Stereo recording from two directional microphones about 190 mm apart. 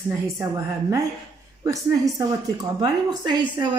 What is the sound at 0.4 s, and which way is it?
A woman's voice, 15° right (ahead or behind).